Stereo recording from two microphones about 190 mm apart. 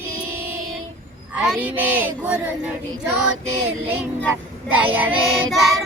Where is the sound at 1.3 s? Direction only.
10° right (ahead or behind).